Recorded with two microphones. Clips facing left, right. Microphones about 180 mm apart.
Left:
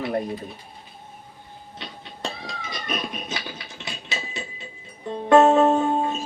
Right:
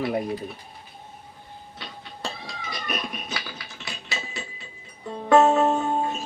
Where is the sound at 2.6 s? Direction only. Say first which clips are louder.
Left 1 dB; 20° left (ahead or behind).